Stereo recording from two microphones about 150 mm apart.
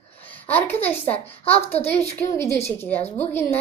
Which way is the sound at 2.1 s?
20° left (ahead or behind).